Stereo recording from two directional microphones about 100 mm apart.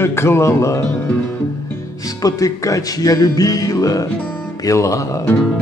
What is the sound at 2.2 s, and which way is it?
Music, 35° left (ahead or behind).